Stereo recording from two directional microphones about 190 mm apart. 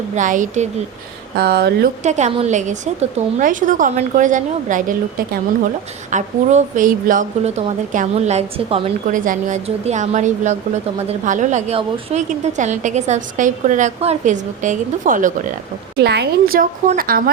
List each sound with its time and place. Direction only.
0.2 s a woman's voice: 40° right (ahead or behind)
1.4 s speech: 55° right (ahead or behind)
2.0 s a woman's voice: 35° right (ahead or behind)
9.1 s a woman's voice: 45° right (ahead or behind)
16.0 s a woman's voice: 60° right (ahead or behind)